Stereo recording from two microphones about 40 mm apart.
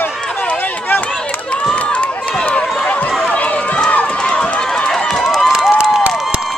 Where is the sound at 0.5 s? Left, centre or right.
Left.